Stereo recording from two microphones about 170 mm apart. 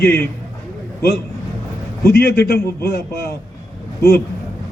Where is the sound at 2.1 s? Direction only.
70° left (ahead or behind).